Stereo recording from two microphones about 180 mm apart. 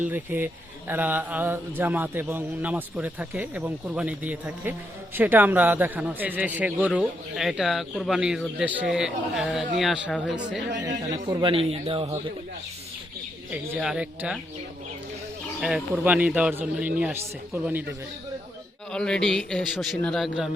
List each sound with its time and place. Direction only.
0.0 s speech: 10° right (ahead or behind)
11.3 s a man's voice: 25° right (ahead or behind)
13.5 s speech: 5° right (ahead or behind)
15.6 s speech: 5° right (ahead or behind)
18.9 s speech: 5° left (ahead or behind)